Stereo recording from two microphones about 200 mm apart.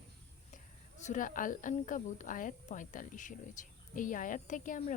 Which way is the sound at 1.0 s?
40° left (ahead or behind).